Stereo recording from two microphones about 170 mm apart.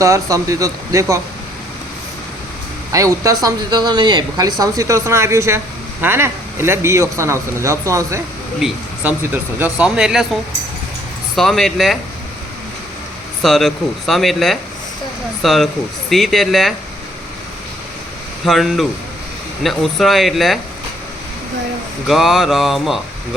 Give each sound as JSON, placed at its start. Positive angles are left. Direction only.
{"t": 0.0, "sound": "speech", "side_deg": -20}
{"t": 2.9, "sound": "speech", "side_deg": -20}
{"t": 8.5, "sound": "speech", "side_deg": -5}
{"t": 11.3, "sound": "speech", "side_deg": 0}
{"t": 13.4, "sound": "speech", "side_deg": 0}
{"t": 18.4, "sound": "speech", "side_deg": 0}
{"t": 22.0, "sound": "speech", "side_deg": 0}